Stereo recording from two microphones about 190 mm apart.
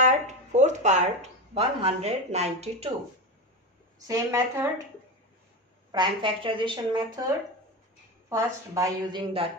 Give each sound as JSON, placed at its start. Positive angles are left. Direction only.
{"t": 0.0, "sound": "speech", "side_deg": -40}
{"t": 4.1, "sound": "a woman's voice", "side_deg": -15}
{"t": 5.9, "sound": "a woman's voice", "side_deg": -25}
{"t": 8.3, "sound": "a woman's voice", "side_deg": -15}